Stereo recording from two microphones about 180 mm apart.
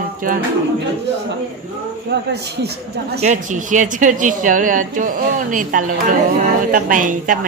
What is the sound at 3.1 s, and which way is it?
A woman's voice, 40° right (ahead or behind).